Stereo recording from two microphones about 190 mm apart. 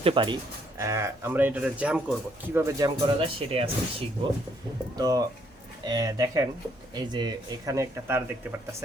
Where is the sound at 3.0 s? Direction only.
30° right (ahead or behind).